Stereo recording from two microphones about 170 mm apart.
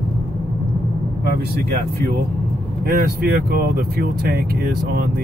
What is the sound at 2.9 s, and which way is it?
Speech, 60° right (ahead or behind).